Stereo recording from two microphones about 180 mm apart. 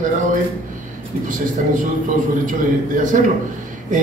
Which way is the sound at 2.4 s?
45° right (ahead or behind).